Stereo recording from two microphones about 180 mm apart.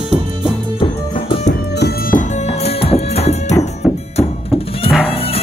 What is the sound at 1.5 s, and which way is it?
Music, 55° left (ahead or behind).